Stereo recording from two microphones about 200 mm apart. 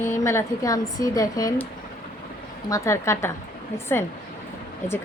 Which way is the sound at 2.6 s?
15° left (ahead or behind).